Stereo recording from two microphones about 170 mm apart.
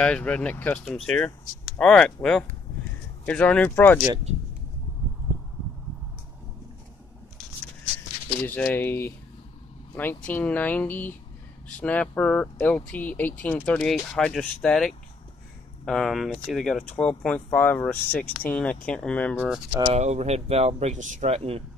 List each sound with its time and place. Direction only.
0.0 s speech: 5° left (ahead or behind)
3.3 s speech: 5° left (ahead or behind)
4.3 s speech: 40° right (ahead or behind)
8.5 s speech: 10° left (ahead or behind)
19.9 s speech: 40° right (ahead or behind)